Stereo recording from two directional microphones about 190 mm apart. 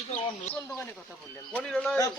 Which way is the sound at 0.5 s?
5° left (ahead or behind).